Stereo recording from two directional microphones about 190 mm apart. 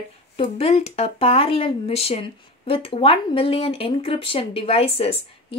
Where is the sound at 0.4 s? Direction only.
30° left (ahead or behind).